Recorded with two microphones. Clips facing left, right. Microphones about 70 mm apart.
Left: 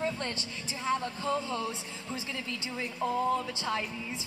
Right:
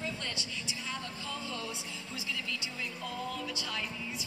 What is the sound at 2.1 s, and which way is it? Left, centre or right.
A woman's voice, left.